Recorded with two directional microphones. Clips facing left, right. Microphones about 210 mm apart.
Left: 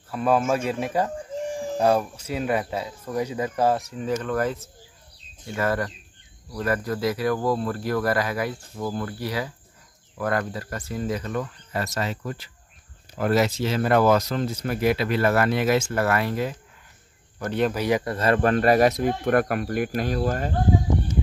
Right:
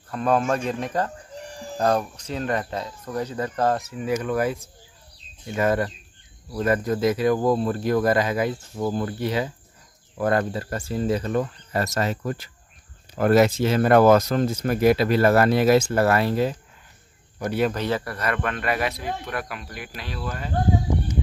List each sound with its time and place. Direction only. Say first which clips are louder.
0.1 s speech: even; 5° left (ahead or behind)
3.8 s speech: right 1 dB; 5° right (ahead or behind); by 16.5 s 30° right (ahead or behind)
17.4 s speech: right 1 dB; 10° right (ahead or behind)
17.6 s speech: left 2 dB; 10° left (ahead or behind); by 20.5 s 45° left (ahead or behind)